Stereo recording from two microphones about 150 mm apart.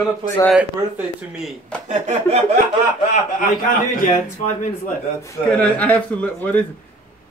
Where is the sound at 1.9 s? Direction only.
50° right (ahead or behind).